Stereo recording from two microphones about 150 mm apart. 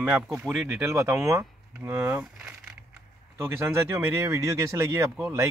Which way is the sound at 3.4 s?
15° right (ahead or behind).